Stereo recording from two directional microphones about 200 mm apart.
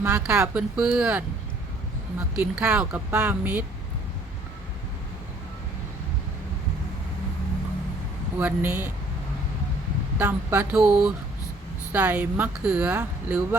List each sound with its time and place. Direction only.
0.0 s speech: 5° right (ahead or behind)
2.3 s speech: 5° right (ahead or behind)
8.4 s speech: 10° right (ahead or behind)
10.2 s speech: 10° right (ahead or behind)